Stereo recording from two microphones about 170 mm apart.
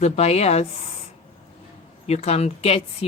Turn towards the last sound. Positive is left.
turn(degrees=35)  # may be behind; listen again after turning